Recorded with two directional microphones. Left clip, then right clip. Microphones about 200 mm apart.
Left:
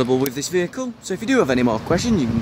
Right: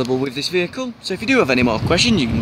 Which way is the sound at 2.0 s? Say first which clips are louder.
Right 4 dB; 35° left (ahead or behind).